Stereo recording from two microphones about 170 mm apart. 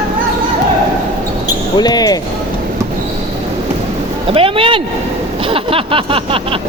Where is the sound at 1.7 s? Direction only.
25° left (ahead or behind).